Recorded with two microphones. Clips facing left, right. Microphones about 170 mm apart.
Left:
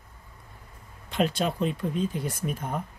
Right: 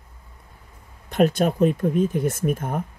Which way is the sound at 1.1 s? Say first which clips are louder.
Right 7 dB; 45° right (ahead or behind).